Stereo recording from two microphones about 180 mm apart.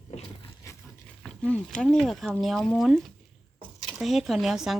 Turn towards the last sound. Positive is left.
turn(degrees=0)  # may be behind; listen again after turning